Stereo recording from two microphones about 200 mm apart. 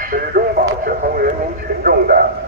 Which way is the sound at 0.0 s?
45° right (ahead or behind).